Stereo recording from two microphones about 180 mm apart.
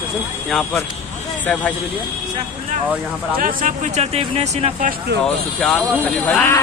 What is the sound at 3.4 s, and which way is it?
Speech, 45° right (ahead or behind).